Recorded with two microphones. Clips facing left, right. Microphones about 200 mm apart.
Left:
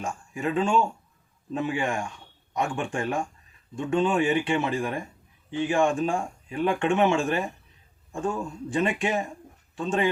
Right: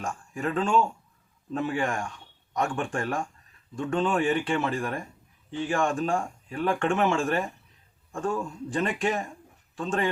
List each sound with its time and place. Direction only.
0.0 s speech: 10° left (ahead or behind)
2.7 s speech: 15° left (ahead or behind)
8.7 s speech: 10° left (ahead or behind)